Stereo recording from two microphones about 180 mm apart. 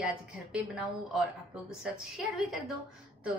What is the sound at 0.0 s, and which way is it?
Speech, 5° right (ahead or behind).